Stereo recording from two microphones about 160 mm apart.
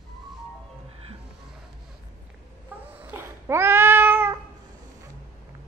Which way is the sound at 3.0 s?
15° right (ahead or behind).